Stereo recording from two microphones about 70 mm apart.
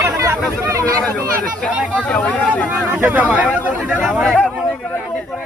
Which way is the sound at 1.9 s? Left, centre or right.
Centre.